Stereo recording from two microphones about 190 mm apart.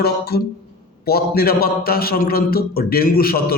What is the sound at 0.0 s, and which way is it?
A man's voice, 55° left (ahead or behind).